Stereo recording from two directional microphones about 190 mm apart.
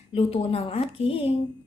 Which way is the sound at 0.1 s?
30° left (ahead or behind).